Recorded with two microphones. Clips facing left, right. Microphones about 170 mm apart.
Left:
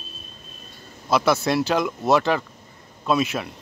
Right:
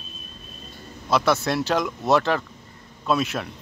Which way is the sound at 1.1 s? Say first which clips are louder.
Left 1 dB; centre (ahead or behind).